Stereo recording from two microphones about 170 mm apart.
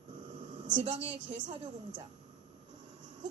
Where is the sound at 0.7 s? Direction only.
35° right (ahead or behind).